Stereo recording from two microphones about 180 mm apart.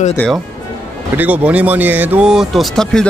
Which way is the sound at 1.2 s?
10° right (ahead or behind).